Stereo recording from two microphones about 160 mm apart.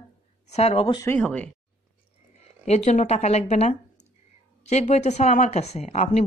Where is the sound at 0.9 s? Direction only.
20° left (ahead or behind).